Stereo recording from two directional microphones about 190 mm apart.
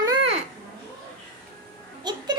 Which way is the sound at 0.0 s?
20° right (ahead or behind).